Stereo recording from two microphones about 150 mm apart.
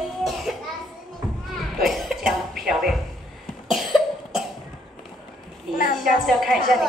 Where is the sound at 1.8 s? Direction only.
Centre (ahead or behind).